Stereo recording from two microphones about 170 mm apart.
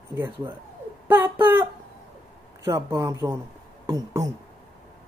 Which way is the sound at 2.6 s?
15° right (ahead or behind).